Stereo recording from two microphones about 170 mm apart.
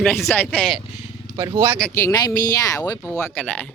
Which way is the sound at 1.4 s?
20° right (ahead or behind).